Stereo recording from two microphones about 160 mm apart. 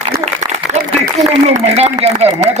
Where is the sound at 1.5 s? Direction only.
40° right (ahead or behind).